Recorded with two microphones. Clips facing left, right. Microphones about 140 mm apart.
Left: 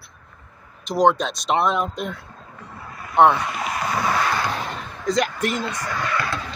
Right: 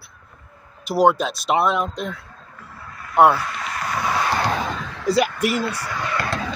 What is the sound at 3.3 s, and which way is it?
Speech, 15° left (ahead or behind).